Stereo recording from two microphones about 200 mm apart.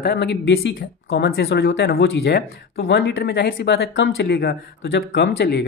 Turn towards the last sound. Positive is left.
turn(degrees=55)  # may be behind; listen again after turning